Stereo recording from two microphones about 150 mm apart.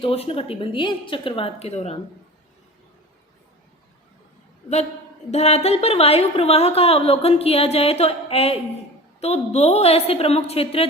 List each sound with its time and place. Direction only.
0.0 s a woman's voice: 40° left (ahead or behind)
5.3 s a woman's voice: 45° left (ahead or behind)